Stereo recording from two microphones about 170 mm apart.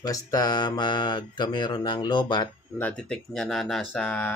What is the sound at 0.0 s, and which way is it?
Speech, 20° left (ahead or behind).